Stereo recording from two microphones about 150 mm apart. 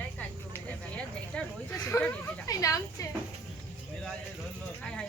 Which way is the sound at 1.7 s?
20° left (ahead or behind).